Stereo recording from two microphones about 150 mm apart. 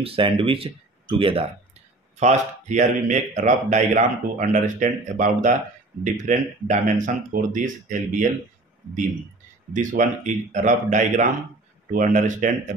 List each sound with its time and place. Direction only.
0.0 s speech: 35° right (ahead or behind)
2.1 s speech: 50° right (ahead or behind)
9.7 s speech: 55° right (ahead or behind)